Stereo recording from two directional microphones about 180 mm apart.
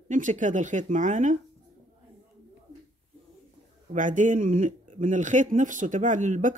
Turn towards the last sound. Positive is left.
turn(degrees=-45)  # may be behind; listen again after turning